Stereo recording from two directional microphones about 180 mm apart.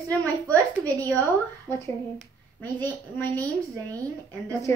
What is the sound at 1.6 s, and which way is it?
A child's voice, 15° left (ahead or behind).